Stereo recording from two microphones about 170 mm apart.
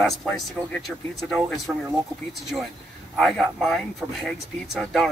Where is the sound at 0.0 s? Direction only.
5° left (ahead or behind).